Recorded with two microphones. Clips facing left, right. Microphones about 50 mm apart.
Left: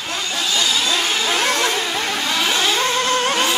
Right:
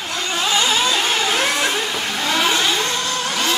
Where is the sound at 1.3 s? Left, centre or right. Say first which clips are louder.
Even; centre.